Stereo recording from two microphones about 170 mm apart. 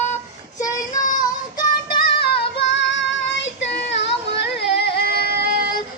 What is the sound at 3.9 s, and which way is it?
Music, 85° left.